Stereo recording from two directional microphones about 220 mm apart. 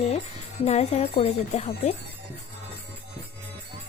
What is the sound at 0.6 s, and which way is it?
Speech, 30° left (ahead or behind).